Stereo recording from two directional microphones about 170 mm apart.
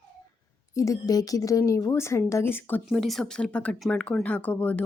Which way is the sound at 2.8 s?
Centre (ahead or behind).